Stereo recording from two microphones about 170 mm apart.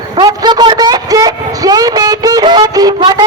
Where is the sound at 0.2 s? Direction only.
25° right (ahead or behind).